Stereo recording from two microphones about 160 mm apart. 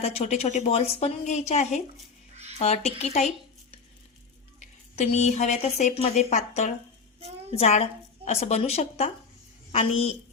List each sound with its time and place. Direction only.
0.0 s a woman's voice: 40° left (ahead or behind)
4.9 s a woman's voice: 45° left (ahead or behind)